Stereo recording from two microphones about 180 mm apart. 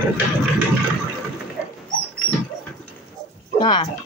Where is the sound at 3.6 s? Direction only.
25° left (ahead or behind).